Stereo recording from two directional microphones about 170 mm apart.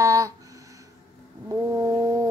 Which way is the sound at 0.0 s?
20° right (ahead or behind).